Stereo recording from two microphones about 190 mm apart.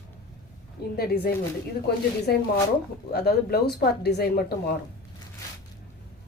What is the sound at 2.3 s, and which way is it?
Speech, 55° left (ahead or behind).